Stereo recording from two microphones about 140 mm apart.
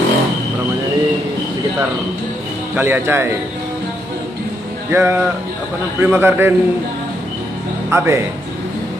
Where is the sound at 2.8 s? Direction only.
15° right (ahead or behind).